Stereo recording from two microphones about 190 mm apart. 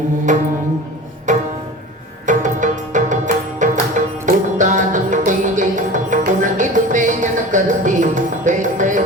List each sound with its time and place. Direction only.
0.3 s music: 40° right (ahead or behind)